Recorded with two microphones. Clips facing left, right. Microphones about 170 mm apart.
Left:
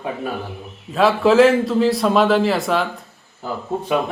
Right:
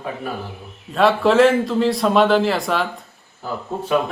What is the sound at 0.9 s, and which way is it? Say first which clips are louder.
Speech: left 1 dB; centre (ahead or behind).